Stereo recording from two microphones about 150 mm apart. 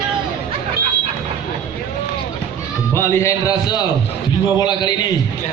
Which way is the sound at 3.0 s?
20° left (ahead or behind).